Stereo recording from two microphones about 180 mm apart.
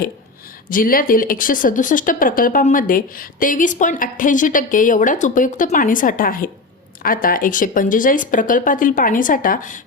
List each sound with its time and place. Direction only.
0.7 s speech: 50° left (ahead or behind)